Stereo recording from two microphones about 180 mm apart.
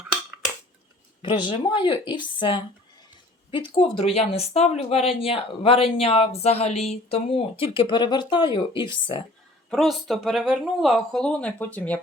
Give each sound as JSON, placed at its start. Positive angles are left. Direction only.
{"t": 1.2, "sound": "speech", "side_deg": 25}
{"t": 9.6, "sound": "speech", "side_deg": 0}